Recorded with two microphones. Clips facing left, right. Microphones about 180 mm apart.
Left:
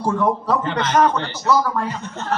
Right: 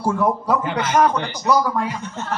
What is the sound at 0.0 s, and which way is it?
Speech, 10° right (ahead or behind).